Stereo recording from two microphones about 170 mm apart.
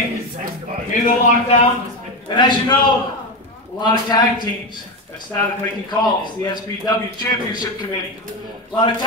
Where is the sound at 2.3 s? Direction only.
25° left (ahead or behind).